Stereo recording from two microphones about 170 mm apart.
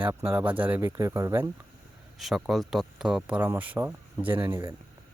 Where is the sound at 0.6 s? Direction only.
10° right (ahead or behind).